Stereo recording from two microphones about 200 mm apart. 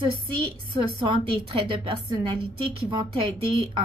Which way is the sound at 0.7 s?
25° right (ahead or behind).